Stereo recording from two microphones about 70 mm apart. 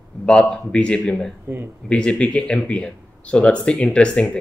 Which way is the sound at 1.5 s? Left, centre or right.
Right.